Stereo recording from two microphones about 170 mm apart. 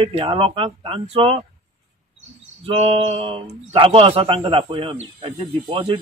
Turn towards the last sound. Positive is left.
turn(degrees=-30)  # may be behind; listen again after turning